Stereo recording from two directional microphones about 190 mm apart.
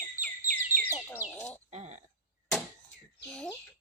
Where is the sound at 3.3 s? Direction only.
5° left (ahead or behind).